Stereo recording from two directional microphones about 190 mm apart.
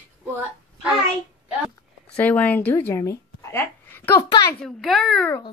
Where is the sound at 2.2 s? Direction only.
10° left (ahead or behind).